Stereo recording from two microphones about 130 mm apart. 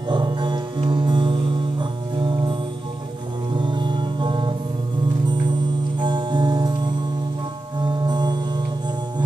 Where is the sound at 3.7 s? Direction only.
35° right (ahead or behind).